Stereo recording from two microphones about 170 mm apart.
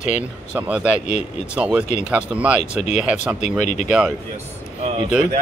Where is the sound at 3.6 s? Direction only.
45° left (ahead or behind).